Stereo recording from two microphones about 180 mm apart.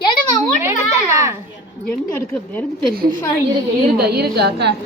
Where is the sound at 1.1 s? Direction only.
15° right (ahead or behind).